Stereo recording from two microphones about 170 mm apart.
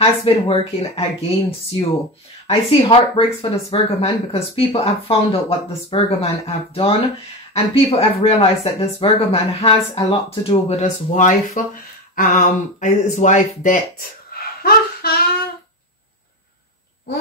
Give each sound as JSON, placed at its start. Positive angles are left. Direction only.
{"t": 0.0, "sound": "speech", "side_deg": 35}
{"t": 2.4, "sound": "speech", "side_deg": 35}